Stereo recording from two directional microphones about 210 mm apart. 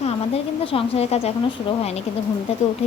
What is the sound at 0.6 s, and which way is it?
Speech, 25° left (ahead or behind).